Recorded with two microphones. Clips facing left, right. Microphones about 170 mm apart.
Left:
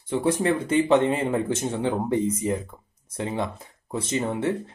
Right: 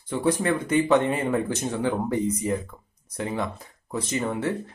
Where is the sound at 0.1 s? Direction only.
25° left (ahead or behind).